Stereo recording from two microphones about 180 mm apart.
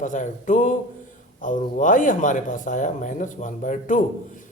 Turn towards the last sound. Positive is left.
turn(degrees=45)  # may be behind; listen again after turning